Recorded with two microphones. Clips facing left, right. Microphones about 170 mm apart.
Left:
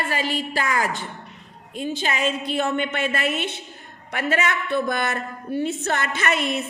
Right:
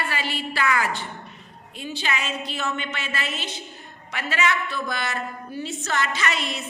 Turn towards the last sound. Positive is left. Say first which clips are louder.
# left 4 dB
turn(degrees=55)  # may be behind; listen again after turning